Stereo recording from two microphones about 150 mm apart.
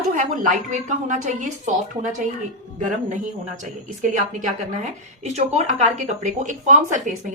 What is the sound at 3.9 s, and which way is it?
A woman's voice, 55° right (ahead or behind).